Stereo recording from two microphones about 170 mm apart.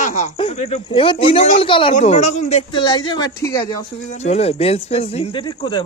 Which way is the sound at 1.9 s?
40° left (ahead or behind).